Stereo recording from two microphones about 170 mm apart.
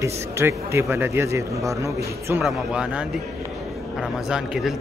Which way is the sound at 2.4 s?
5° right (ahead or behind).